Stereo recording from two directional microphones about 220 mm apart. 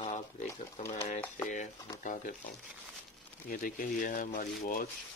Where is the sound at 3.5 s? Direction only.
35° left (ahead or behind).